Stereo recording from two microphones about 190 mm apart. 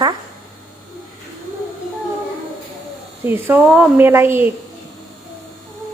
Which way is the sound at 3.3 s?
10° right (ahead or behind).